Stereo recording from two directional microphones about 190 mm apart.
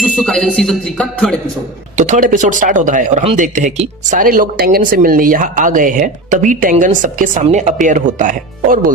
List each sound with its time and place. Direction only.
0.2 s music: 5° left (ahead or behind)
2.0 s speech: 40° right (ahead or behind)